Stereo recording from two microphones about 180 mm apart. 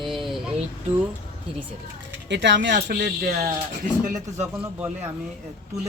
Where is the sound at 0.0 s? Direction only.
Centre (ahead or behind).